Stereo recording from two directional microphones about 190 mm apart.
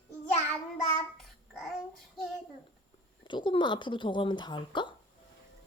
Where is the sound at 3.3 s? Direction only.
25° left (ahead or behind).